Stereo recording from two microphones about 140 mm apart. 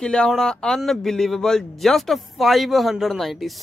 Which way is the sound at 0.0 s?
5° left (ahead or behind).